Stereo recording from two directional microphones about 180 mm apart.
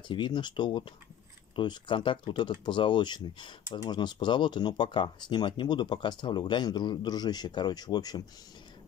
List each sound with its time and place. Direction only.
0.1 s speech: 25° left (ahead or behind)